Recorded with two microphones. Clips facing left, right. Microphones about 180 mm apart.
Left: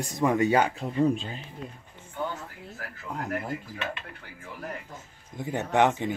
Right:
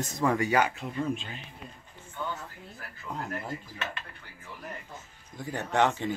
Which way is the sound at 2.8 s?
90° left.